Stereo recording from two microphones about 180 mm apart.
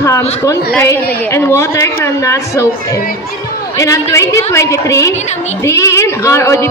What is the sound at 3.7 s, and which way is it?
A man's voice, 15° left (ahead or behind).